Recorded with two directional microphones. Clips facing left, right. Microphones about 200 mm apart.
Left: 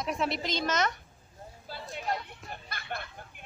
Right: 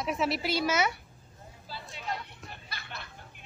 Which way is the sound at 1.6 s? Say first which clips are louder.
Left 3 dB; 50° left (ahead or behind).